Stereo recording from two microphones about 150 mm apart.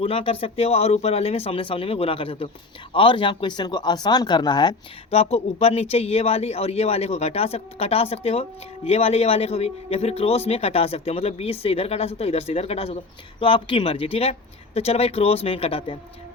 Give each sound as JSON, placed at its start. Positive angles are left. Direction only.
{"t": 0.0, "sound": "speech", "side_deg": 40}
{"t": 5.1, "sound": "speech", "side_deg": 40}